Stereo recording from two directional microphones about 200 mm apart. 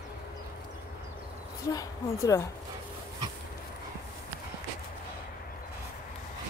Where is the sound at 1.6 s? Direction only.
15° left (ahead or behind).